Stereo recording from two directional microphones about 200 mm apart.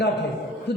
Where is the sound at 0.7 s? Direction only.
55° left (ahead or behind).